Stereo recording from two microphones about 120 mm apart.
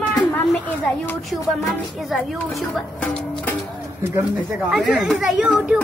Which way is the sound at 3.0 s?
10° left (ahead or behind).